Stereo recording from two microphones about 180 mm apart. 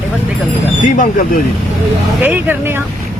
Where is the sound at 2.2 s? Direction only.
10° right (ahead or behind).